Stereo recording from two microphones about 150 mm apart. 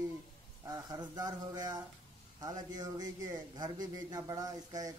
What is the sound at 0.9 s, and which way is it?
Speech, 25° right (ahead or behind).